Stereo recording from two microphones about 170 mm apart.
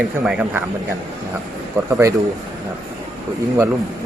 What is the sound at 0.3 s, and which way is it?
Speech, 5° right (ahead or behind).